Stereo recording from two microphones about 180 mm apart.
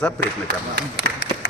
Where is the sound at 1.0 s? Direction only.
75° left (ahead or behind).